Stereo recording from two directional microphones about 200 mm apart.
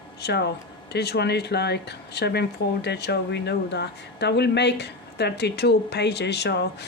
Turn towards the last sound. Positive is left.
turn(degrees=55)  # may be behind; listen again after turning